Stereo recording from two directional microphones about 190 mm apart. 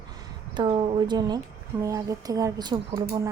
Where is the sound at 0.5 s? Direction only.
25° right (ahead or behind).